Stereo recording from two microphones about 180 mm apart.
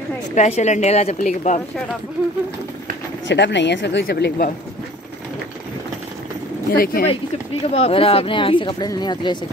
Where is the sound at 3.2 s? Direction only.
75° left (ahead or behind).